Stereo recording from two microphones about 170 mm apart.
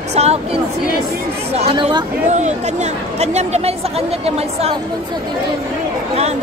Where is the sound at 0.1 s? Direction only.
40° right (ahead or behind).